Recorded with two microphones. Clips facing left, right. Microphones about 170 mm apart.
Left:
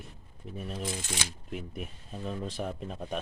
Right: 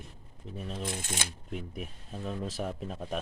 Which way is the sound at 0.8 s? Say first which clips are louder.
Even; 55° right (ahead or behind).